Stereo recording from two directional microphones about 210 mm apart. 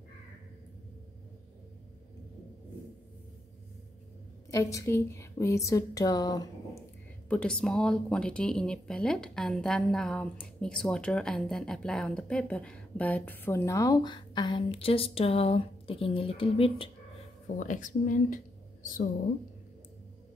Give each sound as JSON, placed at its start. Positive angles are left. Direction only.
{"t": 4.5, "sound": "a woman's voice", "side_deg": 15}
{"t": 7.2, "sound": "speech", "side_deg": 5}
{"t": 17.6, "sound": "speech", "side_deg": 35}